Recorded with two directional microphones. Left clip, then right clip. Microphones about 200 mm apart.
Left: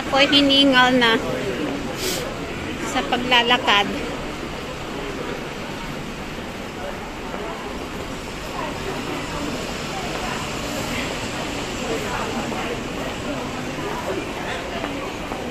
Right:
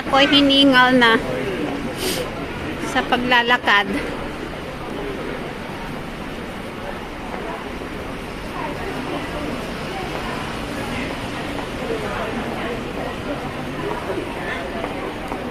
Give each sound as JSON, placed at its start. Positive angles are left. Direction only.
{"t": 0.1, "sound": "a woman's voice", "side_deg": -10}
{"t": 2.9, "sound": "a woman's voice", "side_deg": -10}